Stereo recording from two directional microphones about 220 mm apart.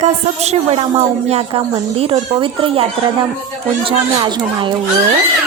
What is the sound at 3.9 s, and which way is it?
Speech, 25° right (ahead or behind).